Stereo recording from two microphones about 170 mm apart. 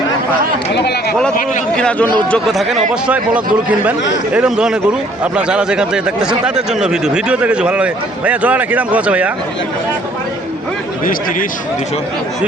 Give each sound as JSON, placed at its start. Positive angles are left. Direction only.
{"t": 0.7, "sound": "speech", "side_deg": 75}
{"t": 1.7, "sound": "a man's voice", "side_deg": 5}
{"t": 11.0, "sound": "speech", "side_deg": 55}